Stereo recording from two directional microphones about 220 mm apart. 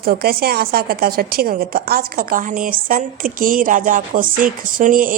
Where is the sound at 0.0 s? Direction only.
40° right (ahead or behind).